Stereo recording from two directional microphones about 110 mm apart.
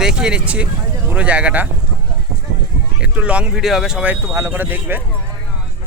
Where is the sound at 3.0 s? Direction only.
10° right (ahead or behind).